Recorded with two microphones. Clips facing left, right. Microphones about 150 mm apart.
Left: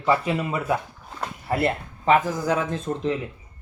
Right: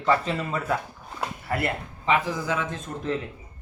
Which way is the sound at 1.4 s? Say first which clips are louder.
Left 5 dB; 25° left (ahead or behind).